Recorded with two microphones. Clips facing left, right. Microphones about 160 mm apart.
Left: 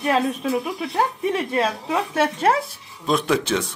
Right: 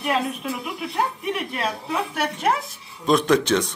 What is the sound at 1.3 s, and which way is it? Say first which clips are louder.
A woman's voice: left 5 dB; 25° left (ahead or behind).